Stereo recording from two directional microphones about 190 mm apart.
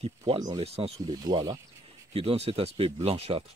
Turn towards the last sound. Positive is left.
turn(degrees=-30)  # may be behind; listen again after turning